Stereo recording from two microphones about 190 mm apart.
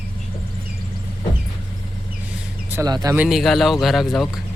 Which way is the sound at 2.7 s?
20° right (ahead or behind).